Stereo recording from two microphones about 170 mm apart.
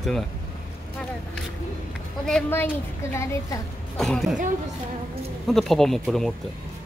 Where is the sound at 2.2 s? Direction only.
5° left (ahead or behind).